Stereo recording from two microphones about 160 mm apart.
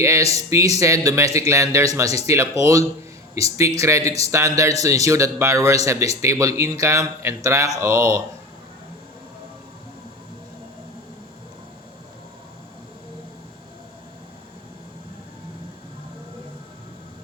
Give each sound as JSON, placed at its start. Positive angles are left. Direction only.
{"t": 0.0, "sound": "a man's voice", "side_deg": -20}